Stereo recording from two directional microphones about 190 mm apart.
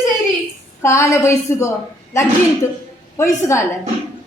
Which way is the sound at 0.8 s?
15° left (ahead or behind).